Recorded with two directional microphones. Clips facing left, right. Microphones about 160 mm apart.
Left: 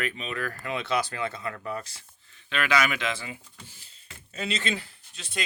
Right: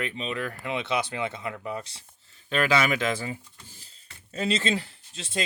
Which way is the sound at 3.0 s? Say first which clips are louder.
Right 4 dB; 45° right (ahead or behind).